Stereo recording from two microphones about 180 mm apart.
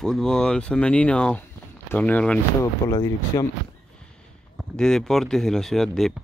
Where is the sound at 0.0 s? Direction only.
5° left (ahead or behind).